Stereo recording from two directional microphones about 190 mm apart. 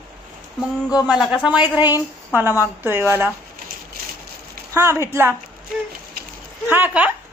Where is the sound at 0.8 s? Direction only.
20° left (ahead or behind).